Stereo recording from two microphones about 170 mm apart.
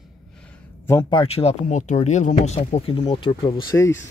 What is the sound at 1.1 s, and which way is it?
Speech, 35° left (ahead or behind).